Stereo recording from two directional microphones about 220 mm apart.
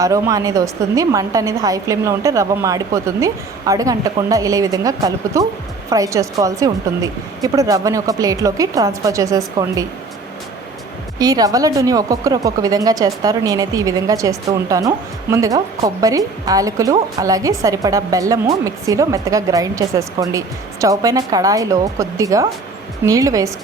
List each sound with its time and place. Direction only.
0.0 s a woman's voice: 15° right (ahead or behind)
11.2 s a woman's voice: 15° right (ahead or behind)